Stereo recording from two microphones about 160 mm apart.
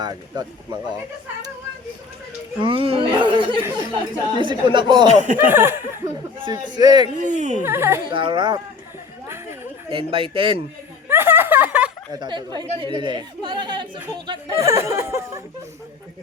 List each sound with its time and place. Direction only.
0.0 s speech: 25° right (ahead or behind)
2.6 s speech: 35° right (ahead or behind)
5.4 s speech: 15° right (ahead or behind)
6.4 s speech: 25° right (ahead or behind)
7.2 s speech: 50° right (ahead or behind)
7.6 s speech: 15° right (ahead or behind)
8.1 s speech: 35° right (ahead or behind)
9.9 s speech: 35° right (ahead or behind)
11.1 s a sound: 15° right (ahead or behind)
12.1 s speech: 25° right (ahead or behind)
14.5 s speech: 20° right (ahead or behind)